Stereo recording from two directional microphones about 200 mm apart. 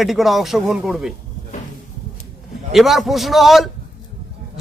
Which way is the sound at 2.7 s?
Centre (ahead or behind).